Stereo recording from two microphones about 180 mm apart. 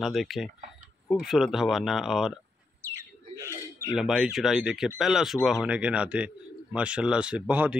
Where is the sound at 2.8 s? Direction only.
15° right (ahead or behind).